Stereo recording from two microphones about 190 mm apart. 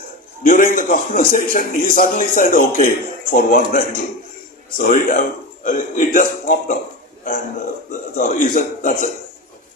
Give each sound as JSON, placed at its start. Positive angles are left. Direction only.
{"t": 0.4, "sound": "a man's voice", "side_deg": 45}
{"t": 7.9, "sound": "a man's voice", "side_deg": 45}